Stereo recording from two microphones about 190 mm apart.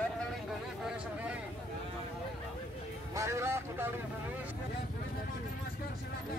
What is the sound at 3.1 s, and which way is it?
Vehicle, 15° right (ahead or behind).